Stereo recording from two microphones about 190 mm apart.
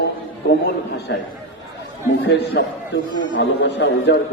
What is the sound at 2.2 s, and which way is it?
A man's voice, 65° left (ahead or behind).